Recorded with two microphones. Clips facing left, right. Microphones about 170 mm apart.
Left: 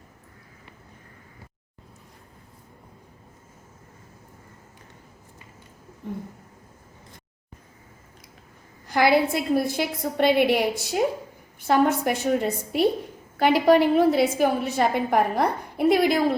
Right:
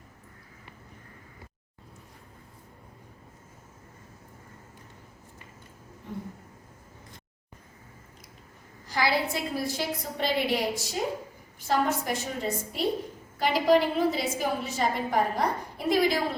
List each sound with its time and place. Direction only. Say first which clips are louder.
8.9 s a woman's voice: left 7 dB; 55° left (ahead or behind)